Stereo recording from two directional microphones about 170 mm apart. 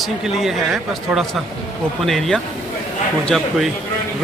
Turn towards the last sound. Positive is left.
turn(degrees=0)  # may be behind; listen again after turning